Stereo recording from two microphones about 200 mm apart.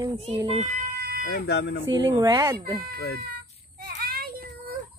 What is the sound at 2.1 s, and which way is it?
Speech, 15° right (ahead or behind).